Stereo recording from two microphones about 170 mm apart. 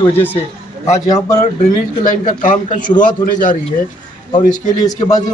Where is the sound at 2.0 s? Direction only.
50° left (ahead or behind).